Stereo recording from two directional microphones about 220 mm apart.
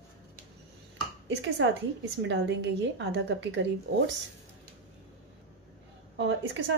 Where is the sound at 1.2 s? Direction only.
60° right (ahead or behind).